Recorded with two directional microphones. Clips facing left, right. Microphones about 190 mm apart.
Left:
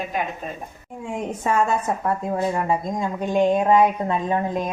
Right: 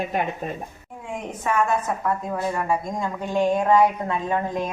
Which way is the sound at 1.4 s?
30° left (ahead or behind).